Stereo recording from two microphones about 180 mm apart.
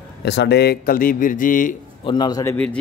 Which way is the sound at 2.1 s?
25° left (ahead or behind).